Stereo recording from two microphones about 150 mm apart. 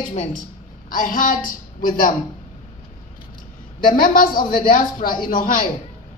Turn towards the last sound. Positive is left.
turn(degrees=70)  # may be behind; listen again after turning